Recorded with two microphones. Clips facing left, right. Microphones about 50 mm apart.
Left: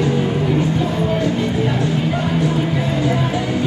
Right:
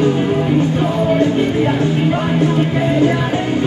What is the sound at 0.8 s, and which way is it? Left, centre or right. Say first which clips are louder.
Music: right 4 dB; right.